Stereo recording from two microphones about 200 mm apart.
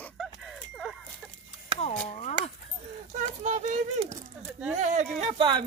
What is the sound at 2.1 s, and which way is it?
Speech, 35° left (ahead or behind).